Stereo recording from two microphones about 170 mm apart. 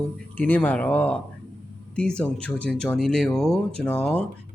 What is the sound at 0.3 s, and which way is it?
Speech, 10° left (ahead or behind).